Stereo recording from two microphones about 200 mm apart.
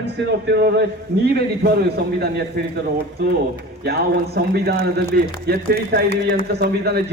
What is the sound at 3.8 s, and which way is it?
A man's voice, 50° right (ahead or behind).